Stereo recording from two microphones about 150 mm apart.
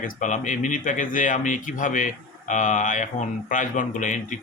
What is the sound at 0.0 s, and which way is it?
Speech, 60° left (ahead or behind).